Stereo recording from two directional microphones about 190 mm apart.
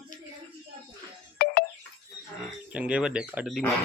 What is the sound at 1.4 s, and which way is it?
Music, 55° left (ahead or behind).